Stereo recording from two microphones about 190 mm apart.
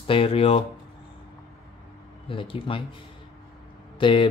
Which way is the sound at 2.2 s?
25° left (ahead or behind).